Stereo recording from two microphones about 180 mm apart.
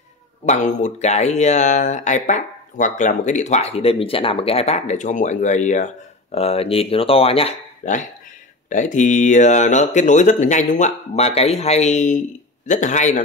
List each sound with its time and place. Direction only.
0.5 s speech: 40° left (ahead or behind)